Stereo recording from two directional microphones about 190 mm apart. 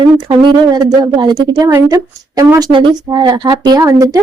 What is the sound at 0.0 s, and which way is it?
A woman's voice, 25° right (ahead or behind).